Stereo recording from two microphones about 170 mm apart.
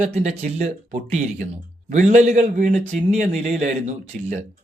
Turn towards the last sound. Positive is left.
turn(degrees=-45)  # may be behind; listen again after turning